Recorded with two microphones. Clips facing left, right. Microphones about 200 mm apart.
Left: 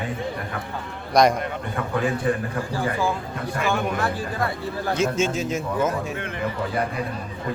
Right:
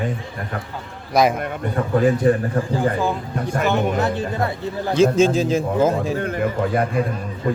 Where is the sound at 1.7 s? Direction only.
40° right (ahead or behind).